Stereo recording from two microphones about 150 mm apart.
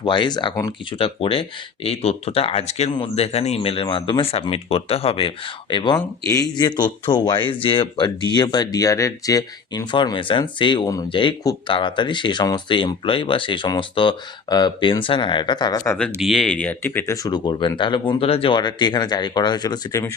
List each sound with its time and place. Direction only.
0.0 s speech: 30° left (ahead or behind)
5.7 s speech: 30° left (ahead or behind)
15.8 s speech: 10° left (ahead or behind)
17.2 s speech: 30° left (ahead or behind)